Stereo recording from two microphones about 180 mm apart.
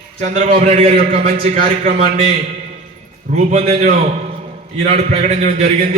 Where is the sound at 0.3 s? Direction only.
40° right (ahead or behind).